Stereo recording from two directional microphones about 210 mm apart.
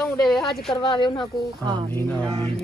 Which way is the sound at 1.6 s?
20° right (ahead or behind).